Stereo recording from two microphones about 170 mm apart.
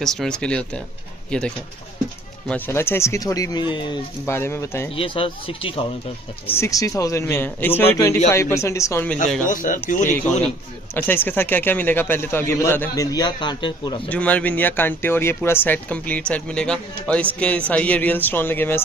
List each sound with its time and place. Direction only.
0.0 s speech: centre (ahead or behind); by 3.9 s 25° left (ahead or behind)
4.3 s speech: 15° left (ahead or behind)
4.9 s speech: 30° left (ahead or behind)
6.4 s speech: 15° left (ahead or behind)
9.5 s speech: 50° left (ahead or behind)
11.0 s speech: 10° left (ahead or behind)
14.0 s speech: 10° left (ahead or behind)